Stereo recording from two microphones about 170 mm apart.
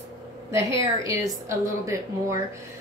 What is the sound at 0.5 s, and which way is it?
A woman's voice, 20° right (ahead or behind).